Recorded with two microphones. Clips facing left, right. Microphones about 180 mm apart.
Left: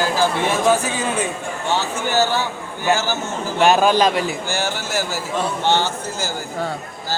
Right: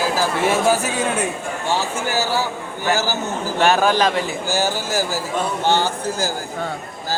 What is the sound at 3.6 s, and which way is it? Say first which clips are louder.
Speech: left 2 dB; 15° left (ahead or behind).